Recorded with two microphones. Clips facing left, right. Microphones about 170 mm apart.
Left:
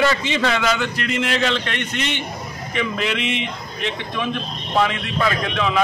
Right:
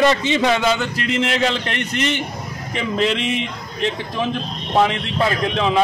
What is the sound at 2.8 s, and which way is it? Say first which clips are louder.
A man's voice: right 3 dB; 35° right (ahead or behind).